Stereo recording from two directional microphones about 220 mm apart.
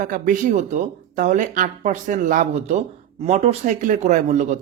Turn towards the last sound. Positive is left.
turn(degrees=-35)  # may be behind; listen again after turning